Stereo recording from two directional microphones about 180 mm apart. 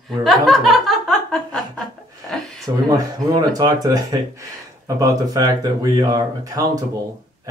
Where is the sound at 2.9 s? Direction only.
20° right (ahead or behind).